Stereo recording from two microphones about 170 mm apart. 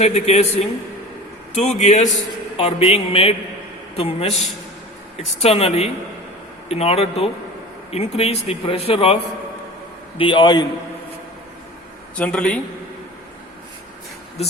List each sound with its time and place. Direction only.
0.0 s a man's voice: 40° left (ahead or behind)
1.5 s a man's voice: 40° left (ahead or behind)
10.2 s a man's voice: 30° left (ahead or behind)
12.1 s a man's voice: 5° left (ahead or behind)